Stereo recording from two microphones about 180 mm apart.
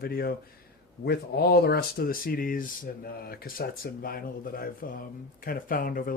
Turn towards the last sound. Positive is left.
turn(degrees=50)  # may be behind; listen again after turning